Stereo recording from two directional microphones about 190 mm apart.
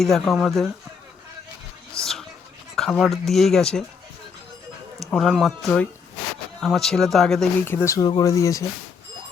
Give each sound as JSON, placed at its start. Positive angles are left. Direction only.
{"t": 0.0, "sound": "speech", "side_deg": 0}
{"t": 2.0, "sound": "speech", "side_deg": -15}
{"t": 2.7, "sound": "speech", "side_deg": 0}
{"t": 5.1, "sound": "speech", "side_deg": 0}
{"t": 7.6, "sound": "speech", "side_deg": 10}